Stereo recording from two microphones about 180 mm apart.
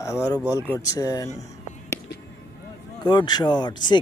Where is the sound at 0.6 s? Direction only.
20° left (ahead or behind).